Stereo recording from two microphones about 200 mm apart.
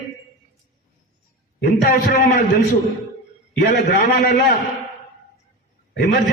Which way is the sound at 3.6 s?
45° left (ahead or behind).